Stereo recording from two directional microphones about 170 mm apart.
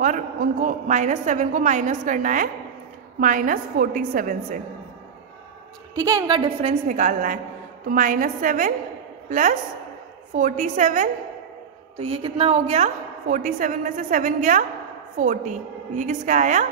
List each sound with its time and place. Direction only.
0.0 s a woman's voice: 50° right (ahead or behind)
5.9 s a woman's voice: 20° right (ahead or behind)
6.9 s a woman's voice: 50° right (ahead or behind)
12.0 s a woman's voice: 35° right (ahead or behind)